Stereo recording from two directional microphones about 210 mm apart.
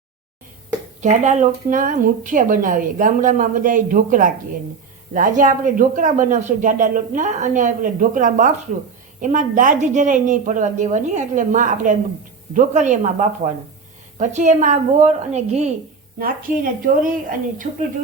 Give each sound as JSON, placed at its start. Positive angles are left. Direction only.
{"t": 1.0, "sound": "speech", "side_deg": -35}
{"t": 17.0, "sound": "speech", "side_deg": -40}